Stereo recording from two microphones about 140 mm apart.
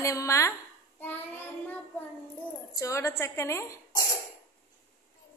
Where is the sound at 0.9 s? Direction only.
15° left (ahead or behind).